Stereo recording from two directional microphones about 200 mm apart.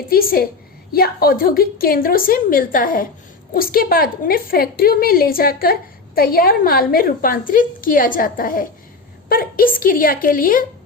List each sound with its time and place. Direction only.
0.1 s a woman's voice: 45° left (ahead or behind)